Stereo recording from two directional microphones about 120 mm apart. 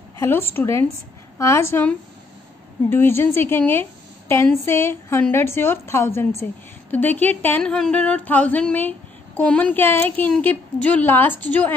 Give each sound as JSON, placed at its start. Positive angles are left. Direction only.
{"t": 0.2, "sound": "a woman's voice", "side_deg": 20}